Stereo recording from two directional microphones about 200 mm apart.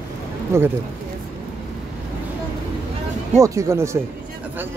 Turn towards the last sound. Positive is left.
turn(degrees=-15)  # may be behind; listen again after turning